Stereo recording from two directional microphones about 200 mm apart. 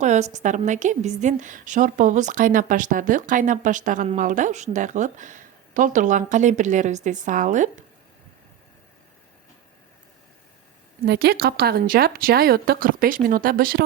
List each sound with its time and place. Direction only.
0.0 s a woman's voice: 35° right (ahead or behind)
11.0 s speech: 50° right (ahead or behind)